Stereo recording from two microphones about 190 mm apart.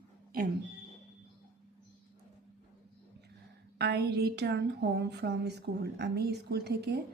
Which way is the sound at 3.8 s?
60° right (ahead or behind).